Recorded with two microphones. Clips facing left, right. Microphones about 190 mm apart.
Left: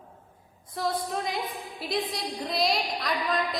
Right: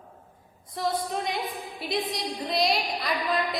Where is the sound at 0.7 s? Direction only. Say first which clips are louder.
Right 1 dB; centre (ahead or behind).